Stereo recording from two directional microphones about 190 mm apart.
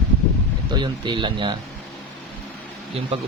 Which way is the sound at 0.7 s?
25° right (ahead or behind).